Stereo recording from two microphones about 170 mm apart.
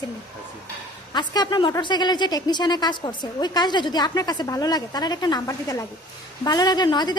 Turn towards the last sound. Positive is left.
turn(degrees=25)  # may be behind; listen again after turning